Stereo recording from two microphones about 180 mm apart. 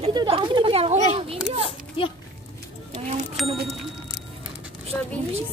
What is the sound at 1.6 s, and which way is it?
Speech, 30° left (ahead or behind).